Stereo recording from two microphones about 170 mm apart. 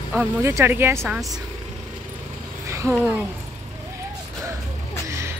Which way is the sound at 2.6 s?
15° right (ahead or behind).